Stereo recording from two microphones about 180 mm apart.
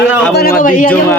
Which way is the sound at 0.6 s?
50° left (ahead or behind).